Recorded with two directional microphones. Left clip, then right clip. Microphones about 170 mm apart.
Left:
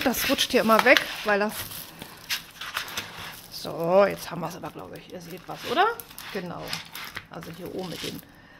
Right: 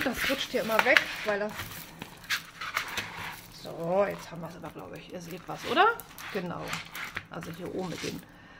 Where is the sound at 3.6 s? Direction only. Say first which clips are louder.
Left 7 dB; 60° left (ahead or behind).